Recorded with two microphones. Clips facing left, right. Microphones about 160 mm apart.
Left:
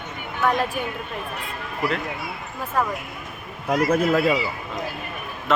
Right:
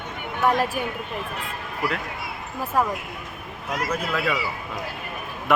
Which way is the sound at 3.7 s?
45° left (ahead or behind).